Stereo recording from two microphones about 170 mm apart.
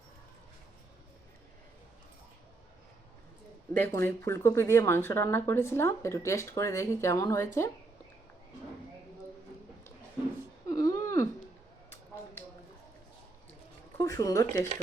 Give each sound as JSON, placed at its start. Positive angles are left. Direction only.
{"t": 3.8, "sound": "speech", "side_deg": 15}
{"t": 10.7, "sound": "a sound", "side_deg": 20}
{"t": 14.0, "sound": "speech", "side_deg": 20}